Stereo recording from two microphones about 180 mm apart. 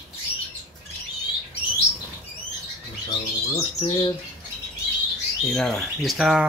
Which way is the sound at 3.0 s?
20° left (ahead or behind).